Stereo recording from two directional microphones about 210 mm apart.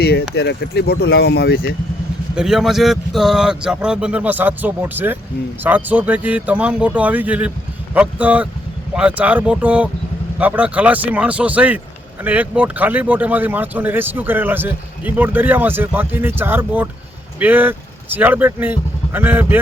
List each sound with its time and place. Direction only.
0.0 s speech: 50° left (ahead or behind)
2.3 s speech: centre (ahead or behind)